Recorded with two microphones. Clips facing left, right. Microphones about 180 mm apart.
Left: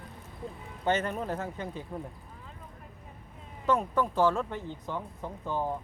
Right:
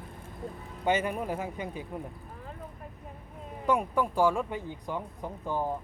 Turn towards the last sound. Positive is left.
turn(degrees=-10)  # may be behind; listen again after turning